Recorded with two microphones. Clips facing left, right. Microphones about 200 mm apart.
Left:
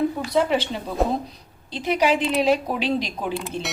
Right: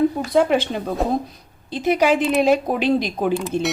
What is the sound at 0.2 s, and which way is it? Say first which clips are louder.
A woman's voice: right 4 dB; 50° right (ahead or behind).